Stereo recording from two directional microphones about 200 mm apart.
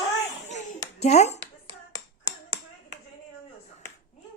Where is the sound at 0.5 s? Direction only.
35° left (ahead or behind).